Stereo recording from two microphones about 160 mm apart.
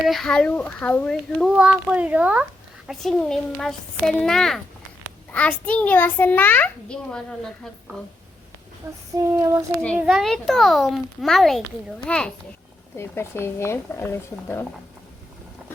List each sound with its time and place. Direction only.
0.1 s a child's voice: 5° left (ahead or behind)
1.5 s a child's voice: 5° right (ahead or behind)
9.2 s child singing: 15° right (ahead or behind)
9.8 s a child's voice: centre (ahead or behind)
13.0 s a child's voice: 15° left (ahead or behind)